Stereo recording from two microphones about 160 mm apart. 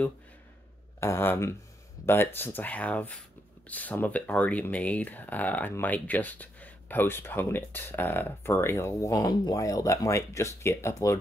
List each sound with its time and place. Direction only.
1.0 s speech: 15° left (ahead or behind)